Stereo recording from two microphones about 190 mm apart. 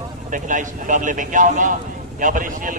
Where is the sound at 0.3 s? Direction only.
40° right (ahead or behind).